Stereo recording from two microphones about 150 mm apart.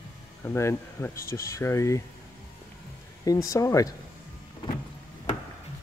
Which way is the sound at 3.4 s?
20° left (ahead or behind).